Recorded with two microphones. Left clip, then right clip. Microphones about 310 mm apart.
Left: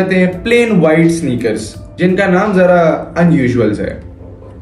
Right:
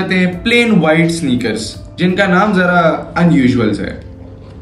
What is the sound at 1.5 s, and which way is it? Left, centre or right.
Speech, left.